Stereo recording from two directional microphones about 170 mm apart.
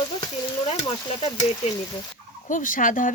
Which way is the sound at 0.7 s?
35° left (ahead or behind).